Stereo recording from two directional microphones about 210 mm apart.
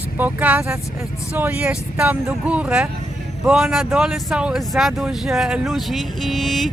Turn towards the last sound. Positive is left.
turn(degrees=0)  # may be behind; listen again after turning